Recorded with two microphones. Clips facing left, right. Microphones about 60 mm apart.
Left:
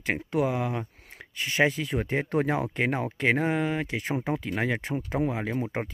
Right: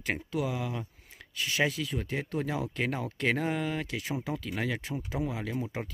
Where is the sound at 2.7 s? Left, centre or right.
Left.